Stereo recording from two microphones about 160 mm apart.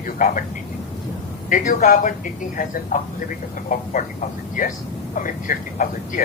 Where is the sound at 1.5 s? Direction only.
55° left (ahead or behind).